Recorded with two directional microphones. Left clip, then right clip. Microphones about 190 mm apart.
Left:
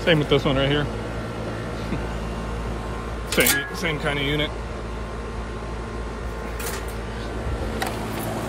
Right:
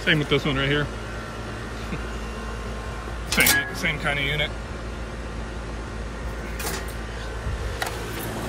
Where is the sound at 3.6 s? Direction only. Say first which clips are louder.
Right 1 dB; 20° left (ahead or behind).